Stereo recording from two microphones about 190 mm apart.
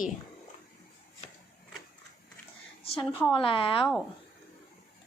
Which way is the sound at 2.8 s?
30° left (ahead or behind).